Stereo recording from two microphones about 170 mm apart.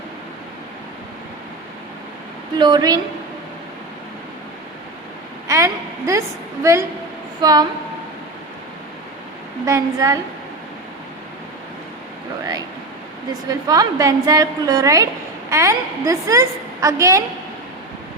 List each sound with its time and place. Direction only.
2.6 s a woman's voice: 25° right (ahead or behind)
5.5 s a woman's voice: 20° right (ahead or behind)
9.6 s a woman's voice: 20° right (ahead or behind)
13.5 s a woman's voice: 20° right (ahead or behind)